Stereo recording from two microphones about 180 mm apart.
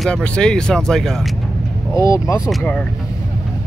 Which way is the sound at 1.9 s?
15° left (ahead or behind).